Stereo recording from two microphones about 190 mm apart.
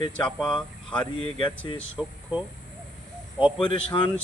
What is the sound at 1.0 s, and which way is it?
Speech, 25° left (ahead or behind).